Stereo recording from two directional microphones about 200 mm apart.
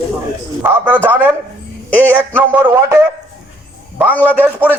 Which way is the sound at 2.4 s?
10° right (ahead or behind).